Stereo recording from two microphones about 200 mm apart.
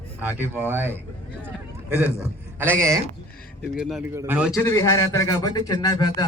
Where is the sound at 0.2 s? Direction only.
10° right (ahead or behind).